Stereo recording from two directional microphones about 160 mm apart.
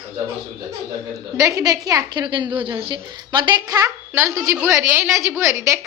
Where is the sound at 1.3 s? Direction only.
20° right (ahead or behind).